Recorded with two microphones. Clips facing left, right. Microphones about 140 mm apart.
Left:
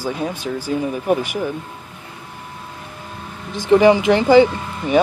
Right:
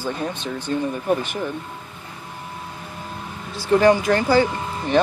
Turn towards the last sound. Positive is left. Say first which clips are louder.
# left 2 dB
turn(degrees=15)  # may be behind; listen again after turning